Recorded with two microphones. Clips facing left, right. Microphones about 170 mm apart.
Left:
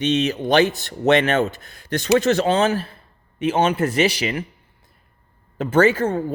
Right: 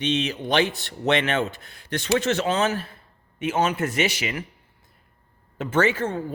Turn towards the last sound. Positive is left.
turn(degrees=40)  # may be behind; listen again after turning